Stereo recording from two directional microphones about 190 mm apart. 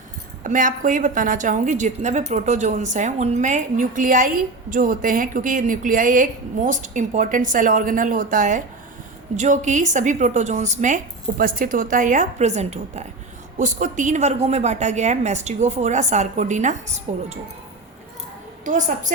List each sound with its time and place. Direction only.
0.4 s a woman's voice: 45° right (ahead or behind)
18.6 s a woman's voice: 40° right (ahead or behind)